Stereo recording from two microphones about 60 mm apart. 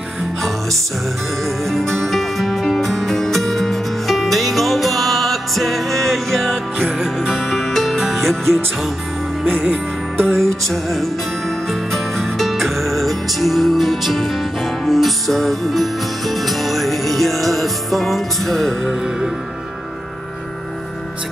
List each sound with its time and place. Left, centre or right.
1.4 s music: centre
7.3 s music: centre
9.5 s music: centre
10.2 s music: centre
18.9 s music: centre